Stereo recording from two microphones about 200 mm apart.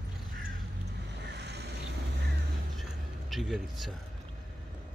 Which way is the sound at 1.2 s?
55° right (ahead or behind).